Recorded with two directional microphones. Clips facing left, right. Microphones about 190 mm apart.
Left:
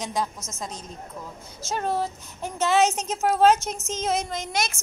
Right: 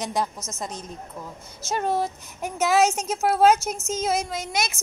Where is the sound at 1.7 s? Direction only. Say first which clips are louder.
Right 2 dB; 10° right (ahead or behind).